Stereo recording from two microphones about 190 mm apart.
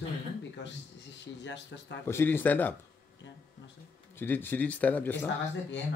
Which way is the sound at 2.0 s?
10° left (ahead or behind).